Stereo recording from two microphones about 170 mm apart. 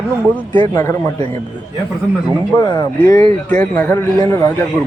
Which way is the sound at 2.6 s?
20° left (ahead or behind).